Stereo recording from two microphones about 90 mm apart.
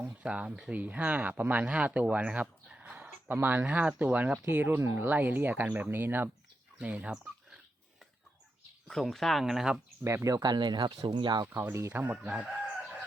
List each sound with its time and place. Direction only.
0.0 s speech: 15° right (ahead or behind)
3.2 s speech: 20° right (ahead or behind)
8.9 s speech: centre (ahead or behind)
10.0 s speech: 30° right (ahead or behind); by 10.9 s 55° right (ahead or behind)
11.0 s speech: 65° right (ahead or behind)
11.4 s speech: 25° right (ahead or behind)
12.1 s chicken: 15° right (ahead or behind)